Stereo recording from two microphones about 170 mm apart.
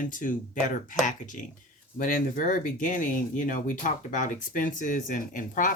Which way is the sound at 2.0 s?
50° left (ahead or behind).